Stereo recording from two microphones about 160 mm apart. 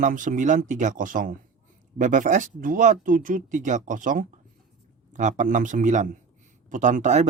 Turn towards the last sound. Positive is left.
turn(degrees=-45)  # may be behind; listen again after turning